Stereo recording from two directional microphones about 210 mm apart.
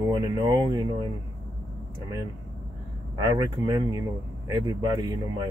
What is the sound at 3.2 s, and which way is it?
Speech, 15° right (ahead or behind).